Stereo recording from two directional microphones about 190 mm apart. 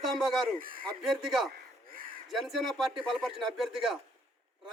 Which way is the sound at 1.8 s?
50° right (ahead or behind).